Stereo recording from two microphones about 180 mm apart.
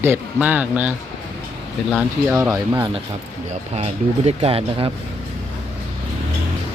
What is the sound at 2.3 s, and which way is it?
Speech, 15° right (ahead or behind).